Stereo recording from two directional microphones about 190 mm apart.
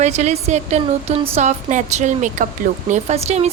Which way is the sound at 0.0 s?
35° right (ahead or behind).